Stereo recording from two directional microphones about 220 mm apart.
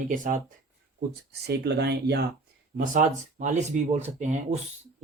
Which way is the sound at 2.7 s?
35° right (ahead or behind).